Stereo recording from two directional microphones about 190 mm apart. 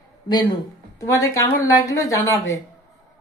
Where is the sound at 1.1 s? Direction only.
15° left (ahead or behind).